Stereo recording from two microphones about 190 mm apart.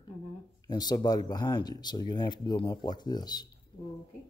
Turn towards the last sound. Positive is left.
turn(degrees=20)  # may be behind; listen again after turning